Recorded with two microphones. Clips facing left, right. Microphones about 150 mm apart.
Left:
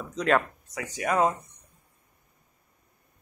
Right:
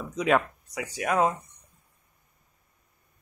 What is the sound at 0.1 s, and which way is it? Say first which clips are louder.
Speech: even; 5° right (ahead or behind).